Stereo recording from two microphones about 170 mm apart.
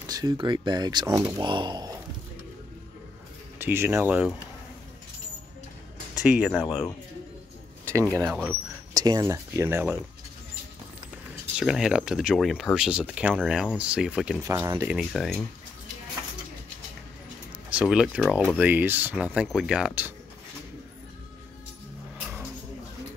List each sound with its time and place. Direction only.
0.0 s speech: 20° right (ahead or behind)
3.5 s speech: 15° right (ahead or behind)
6.1 s speech: 5° right (ahead or behind)
8.3 s speech: 5° right (ahead or behind)
8.9 s speech: 20° right (ahead or behind)
11.5 s speech: 5° right (ahead or behind)
14.4 s speech: 15° right (ahead or behind); by 15.4 s centre (ahead or behind)
17.6 s speech: 5° right (ahead or behind)